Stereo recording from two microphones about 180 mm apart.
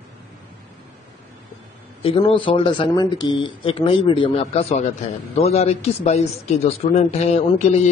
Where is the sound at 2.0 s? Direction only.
30° left (ahead or behind).